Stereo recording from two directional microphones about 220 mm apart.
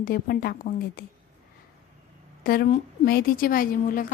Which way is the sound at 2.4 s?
40° left (ahead or behind).